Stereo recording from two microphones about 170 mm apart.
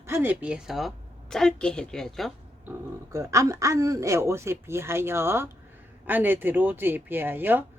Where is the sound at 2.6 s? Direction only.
15° right (ahead or behind).